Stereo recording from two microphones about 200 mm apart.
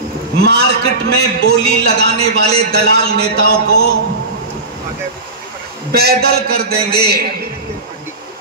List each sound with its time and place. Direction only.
0.4 s a man's voice: 50° right (ahead or behind)
5.9 s a man's voice: 50° right (ahead or behind)